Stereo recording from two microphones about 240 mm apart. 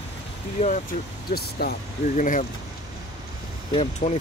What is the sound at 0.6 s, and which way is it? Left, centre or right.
Speech, left.